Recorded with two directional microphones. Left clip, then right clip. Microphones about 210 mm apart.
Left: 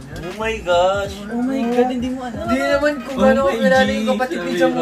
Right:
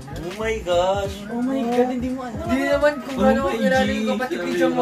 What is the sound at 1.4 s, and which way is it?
Speech, centre (ahead or behind).